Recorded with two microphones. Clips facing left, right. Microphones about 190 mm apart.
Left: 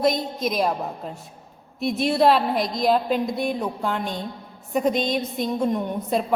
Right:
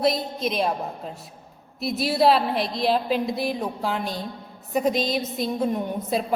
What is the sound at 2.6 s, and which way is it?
Speech, 30° right (ahead or behind).